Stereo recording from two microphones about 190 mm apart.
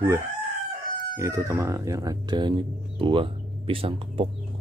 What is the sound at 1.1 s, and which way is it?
Speech, 15° right (ahead or behind).